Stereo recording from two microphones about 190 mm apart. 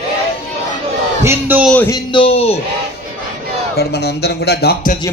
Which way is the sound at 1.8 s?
20° left (ahead or behind).